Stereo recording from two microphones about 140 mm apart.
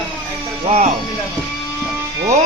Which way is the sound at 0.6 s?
45° right (ahead or behind).